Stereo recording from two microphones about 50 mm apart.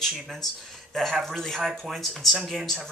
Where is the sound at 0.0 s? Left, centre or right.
Centre.